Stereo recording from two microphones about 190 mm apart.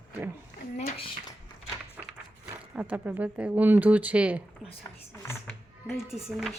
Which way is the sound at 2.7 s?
5° right (ahead or behind).